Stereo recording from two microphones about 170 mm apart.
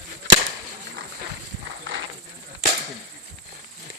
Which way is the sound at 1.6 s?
90° right.